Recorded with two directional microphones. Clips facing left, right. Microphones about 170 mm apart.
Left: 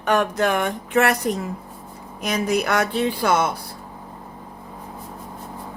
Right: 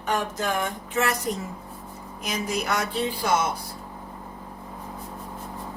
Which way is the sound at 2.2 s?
65° left (ahead or behind).